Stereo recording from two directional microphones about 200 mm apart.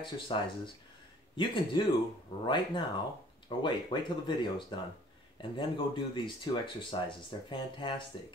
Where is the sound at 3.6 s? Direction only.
25° left (ahead or behind).